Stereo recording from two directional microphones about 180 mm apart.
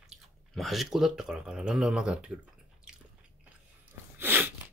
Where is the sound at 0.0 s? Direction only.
Centre (ahead or behind).